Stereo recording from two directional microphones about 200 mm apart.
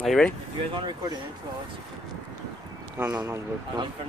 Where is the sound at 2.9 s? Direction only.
15° right (ahead or behind).